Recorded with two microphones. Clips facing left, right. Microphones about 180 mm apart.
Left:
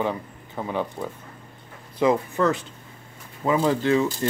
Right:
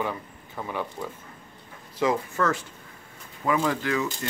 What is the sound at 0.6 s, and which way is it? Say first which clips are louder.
Speech: left 4 dB; 20° left (ahead or behind).